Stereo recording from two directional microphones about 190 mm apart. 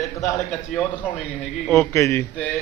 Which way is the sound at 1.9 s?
15° left (ahead or behind).